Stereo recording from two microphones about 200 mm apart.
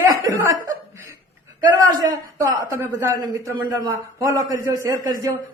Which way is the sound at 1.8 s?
20° right (ahead or behind).